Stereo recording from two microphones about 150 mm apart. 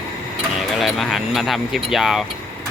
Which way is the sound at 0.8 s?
Centre (ahead or behind).